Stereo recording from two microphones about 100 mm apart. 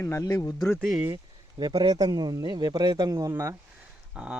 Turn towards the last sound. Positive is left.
turn(degrees=-10)  # may be behind; listen again after turning